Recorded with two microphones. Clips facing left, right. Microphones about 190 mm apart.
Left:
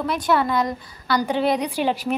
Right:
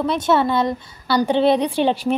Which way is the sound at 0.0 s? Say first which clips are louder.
Right 3 dB; 25° right (ahead or behind).